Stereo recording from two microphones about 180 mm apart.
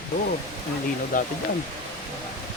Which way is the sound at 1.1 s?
45° left (ahead or behind).